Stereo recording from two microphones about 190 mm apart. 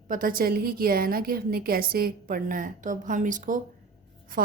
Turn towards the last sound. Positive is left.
turn(degrees=-45)  # may be behind; listen again after turning